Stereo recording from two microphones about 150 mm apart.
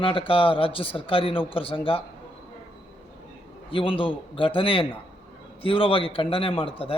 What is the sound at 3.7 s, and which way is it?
A man's voice, 35° left (ahead or behind).